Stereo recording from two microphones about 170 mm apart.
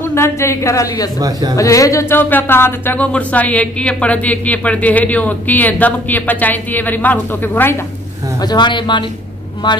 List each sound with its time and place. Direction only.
0.1 s speech: 15° left (ahead or behind)
8.4 s speech: 25° left (ahead or behind)